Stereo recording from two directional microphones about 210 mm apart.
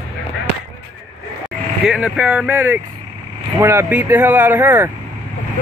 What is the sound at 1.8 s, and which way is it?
A man's voice, 5° right (ahead or behind).